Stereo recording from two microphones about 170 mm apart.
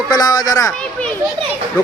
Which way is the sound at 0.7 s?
5° left (ahead or behind).